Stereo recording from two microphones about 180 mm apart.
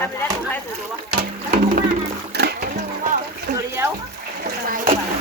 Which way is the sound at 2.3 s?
65° right (ahead or behind).